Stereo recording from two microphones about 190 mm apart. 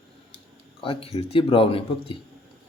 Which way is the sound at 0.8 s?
30° left (ahead or behind).